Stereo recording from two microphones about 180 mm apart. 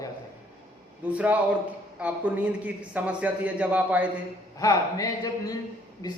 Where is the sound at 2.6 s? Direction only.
5° right (ahead or behind).